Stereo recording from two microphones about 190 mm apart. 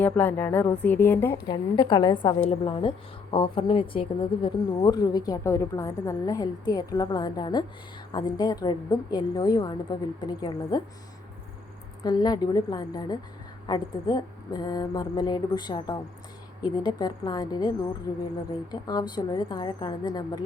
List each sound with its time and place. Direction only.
0.0 s a woman's voice: 10° left (ahead or behind)
1.5 s speech: 20° left (ahead or behind)
12.0 s speech: 20° left (ahead or behind)